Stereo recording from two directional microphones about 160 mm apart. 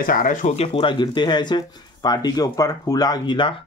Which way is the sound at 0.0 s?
60° left (ahead or behind).